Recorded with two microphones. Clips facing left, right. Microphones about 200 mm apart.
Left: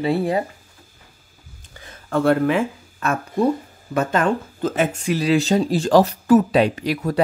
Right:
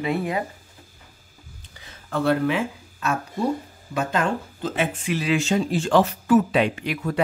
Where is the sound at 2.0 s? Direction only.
50° left (ahead or behind).